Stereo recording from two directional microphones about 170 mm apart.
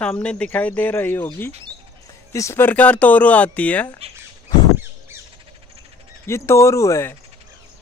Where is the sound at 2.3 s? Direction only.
15° left (ahead or behind).